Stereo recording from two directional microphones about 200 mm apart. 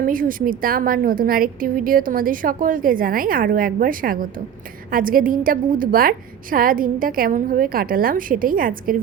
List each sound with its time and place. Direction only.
0.0 s a woman's voice: 45° right (ahead or behind)